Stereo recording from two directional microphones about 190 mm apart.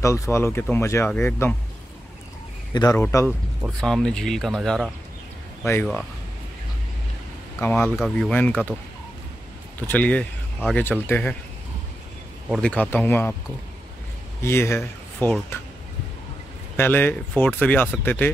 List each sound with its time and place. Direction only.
0.0 s speech: 15° left (ahead or behind)
2.7 s speech: 20° left (ahead or behind)
3.8 s speech: 5° left (ahead or behind)
5.6 s speech: 10° left (ahead or behind)
7.6 s speech: 10° left (ahead or behind)
9.8 s speech: 10° left (ahead or behind)
12.4 s speech: 5° left (ahead or behind)
14.4 s speech: 15° left (ahead or behind)
16.7 s speech: 10° left (ahead or behind)